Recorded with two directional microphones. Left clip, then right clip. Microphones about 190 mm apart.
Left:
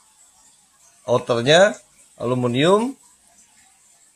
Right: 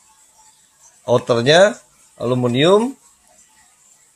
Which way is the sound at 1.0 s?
10° right (ahead or behind).